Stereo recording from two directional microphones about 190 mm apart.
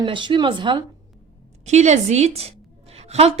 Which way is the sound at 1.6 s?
35° right (ahead or behind).